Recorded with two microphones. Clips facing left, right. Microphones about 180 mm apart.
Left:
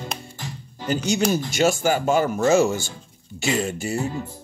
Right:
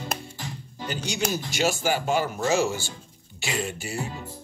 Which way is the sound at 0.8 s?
45° left (ahead or behind).